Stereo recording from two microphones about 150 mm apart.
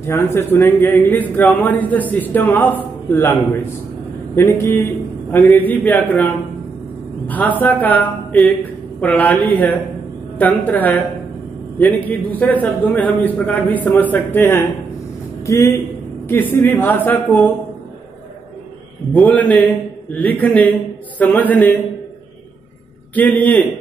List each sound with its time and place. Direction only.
0.0 s a man's voice: 15° left (ahead or behind)
4.4 s a man's voice: 15° left (ahead or behind)
19.1 s a man's voice: 10° left (ahead or behind)
23.1 s a man's voice: 10° left (ahead or behind)